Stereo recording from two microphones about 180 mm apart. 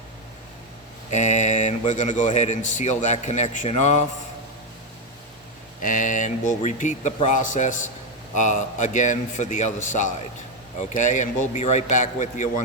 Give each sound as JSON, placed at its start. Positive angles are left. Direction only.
{"t": 1.1, "sound": "speech", "side_deg": 40}
{"t": 5.8, "sound": "speech", "side_deg": 45}